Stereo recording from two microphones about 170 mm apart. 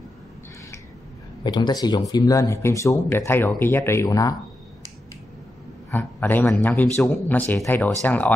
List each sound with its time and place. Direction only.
1.4 s speech: 25° left (ahead or behind)
5.9 s speech: 10° left (ahead or behind)